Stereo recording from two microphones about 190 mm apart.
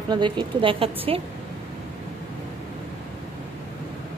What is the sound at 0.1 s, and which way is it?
A woman's voice, 25° right (ahead or behind).